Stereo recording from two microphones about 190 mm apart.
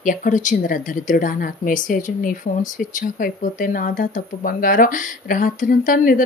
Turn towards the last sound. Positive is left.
turn(degrees=45)  # may be behind; listen again after turning